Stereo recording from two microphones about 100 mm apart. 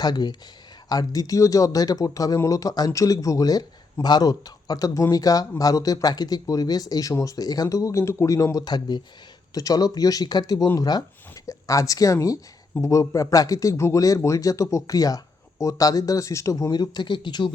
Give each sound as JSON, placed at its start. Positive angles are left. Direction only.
{"t": 0.0, "sound": "speech", "side_deg": 45}